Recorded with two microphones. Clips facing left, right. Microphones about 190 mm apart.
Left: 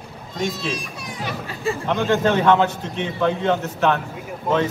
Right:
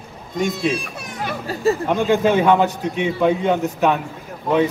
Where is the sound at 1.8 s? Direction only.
10° right (ahead or behind).